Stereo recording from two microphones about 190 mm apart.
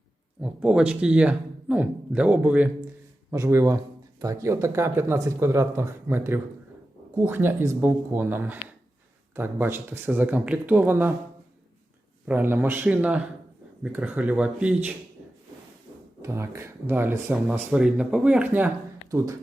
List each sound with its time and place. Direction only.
0.4 s speech: 5° right (ahead or behind)
12.2 s speech: 10° right (ahead or behind)
16.2 s speech: 15° right (ahead or behind)